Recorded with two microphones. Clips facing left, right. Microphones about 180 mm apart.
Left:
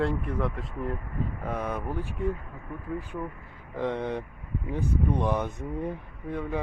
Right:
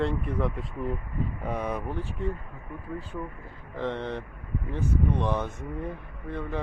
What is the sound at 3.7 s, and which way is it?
Speech, 10° left (ahead or behind).